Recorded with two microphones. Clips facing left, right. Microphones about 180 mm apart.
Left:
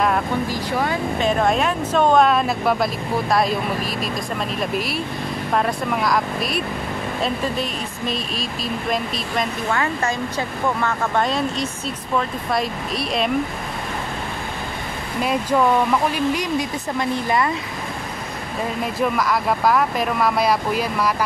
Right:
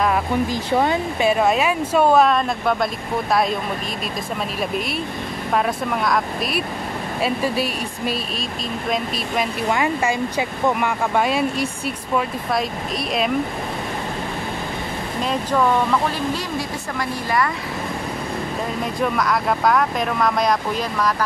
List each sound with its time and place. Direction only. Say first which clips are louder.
1.2 s speech: right 1 dB; 5° right (ahead or behind)
5.5 s speech: right 1 dB; centre (ahead or behind)
9.7 s speech: right 4 dB; 15° right (ahead or behind)
17.1 s speech: left 1 dB; 20° left (ahead or behind)
18.9 s speech: even; centre (ahead or behind)